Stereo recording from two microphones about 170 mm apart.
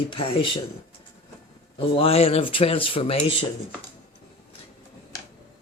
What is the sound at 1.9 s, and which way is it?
Speech, 35° left (ahead or behind).